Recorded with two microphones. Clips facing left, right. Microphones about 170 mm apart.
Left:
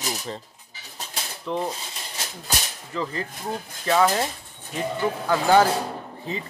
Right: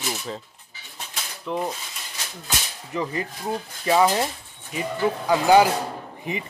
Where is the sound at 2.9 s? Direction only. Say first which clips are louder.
Right 2 dB; 15° right (ahead or behind).